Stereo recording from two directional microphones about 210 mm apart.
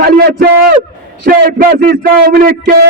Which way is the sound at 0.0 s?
50° right (ahead or behind).